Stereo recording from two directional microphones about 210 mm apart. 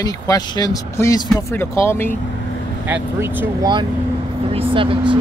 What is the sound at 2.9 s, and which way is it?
Speech, 10° right (ahead or behind).